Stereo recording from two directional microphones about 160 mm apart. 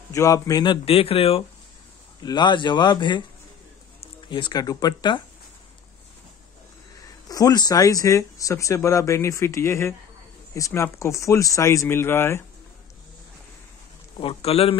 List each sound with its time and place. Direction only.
0.1 s speech: 20° left (ahead or behind)
0.8 s speech: 40° left (ahead or behind)
7.0 s speech: 25° left (ahead or behind)
14.1 s speech: 35° left (ahead or behind)